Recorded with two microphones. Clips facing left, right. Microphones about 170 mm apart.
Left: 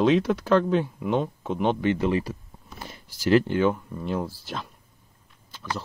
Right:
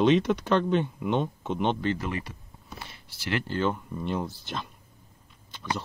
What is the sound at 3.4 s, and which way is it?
Speech, 15° left (ahead or behind).